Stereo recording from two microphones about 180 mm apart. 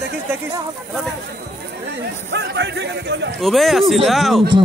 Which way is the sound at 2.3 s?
75° right (ahead or behind).